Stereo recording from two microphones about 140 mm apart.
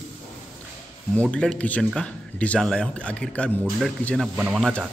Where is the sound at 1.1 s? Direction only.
5° left (ahead or behind).